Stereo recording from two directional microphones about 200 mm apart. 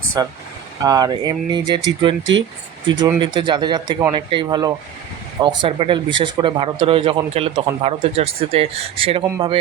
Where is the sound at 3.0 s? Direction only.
20° right (ahead or behind).